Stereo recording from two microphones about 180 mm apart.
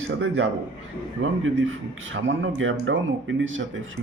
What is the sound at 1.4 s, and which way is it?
A man's voice, 90° right.